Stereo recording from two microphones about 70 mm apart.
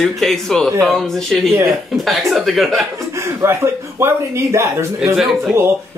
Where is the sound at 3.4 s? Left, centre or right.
Right.